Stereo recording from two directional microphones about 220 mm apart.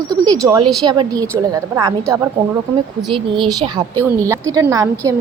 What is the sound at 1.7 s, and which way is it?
Speech, 10° right (ahead or behind).